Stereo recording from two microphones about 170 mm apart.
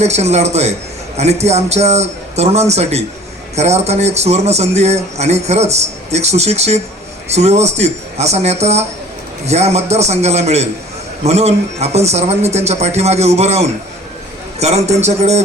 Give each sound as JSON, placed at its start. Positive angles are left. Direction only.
{"t": 0.0, "sound": "speech", "side_deg": -40}